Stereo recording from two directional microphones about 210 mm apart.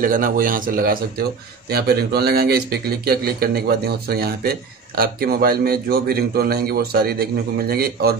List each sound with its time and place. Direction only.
0.0 s a man's voice: 40° right (ahead or behind)